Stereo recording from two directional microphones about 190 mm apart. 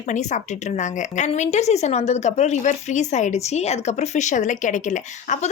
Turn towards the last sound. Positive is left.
turn(degrees=40)  # may be behind; listen again after turning